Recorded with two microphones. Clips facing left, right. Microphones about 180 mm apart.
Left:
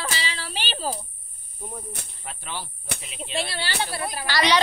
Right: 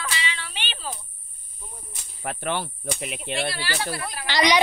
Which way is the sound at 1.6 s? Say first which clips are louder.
Left 9 dB; 60° left (ahead or behind).